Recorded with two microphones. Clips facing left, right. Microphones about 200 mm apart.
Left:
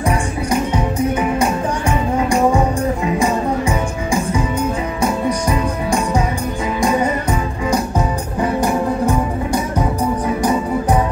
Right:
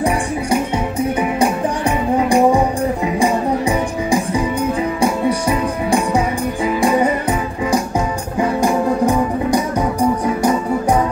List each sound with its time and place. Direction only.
1.4 s music: 35° right (ahead or behind)
8.5 s music: 15° right (ahead or behind)